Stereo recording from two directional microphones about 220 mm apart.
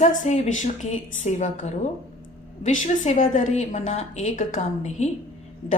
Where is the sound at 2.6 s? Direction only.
30° left (ahead or behind).